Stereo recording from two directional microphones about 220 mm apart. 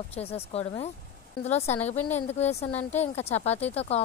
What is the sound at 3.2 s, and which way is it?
Speech, 30° left (ahead or behind).